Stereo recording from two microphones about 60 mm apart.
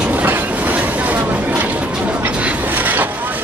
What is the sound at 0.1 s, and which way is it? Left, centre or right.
Vehicle, right.